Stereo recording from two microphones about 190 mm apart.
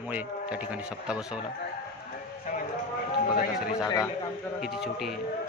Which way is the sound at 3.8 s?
20° left (ahead or behind).